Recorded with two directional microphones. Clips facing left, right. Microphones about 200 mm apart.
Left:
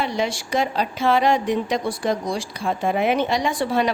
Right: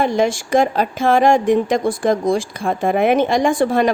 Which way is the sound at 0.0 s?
50° right (ahead or behind).